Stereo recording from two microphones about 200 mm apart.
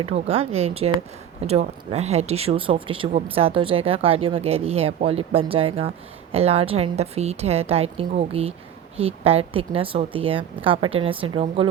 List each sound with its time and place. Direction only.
0.0 s a woman's voice: 30° right (ahead or behind)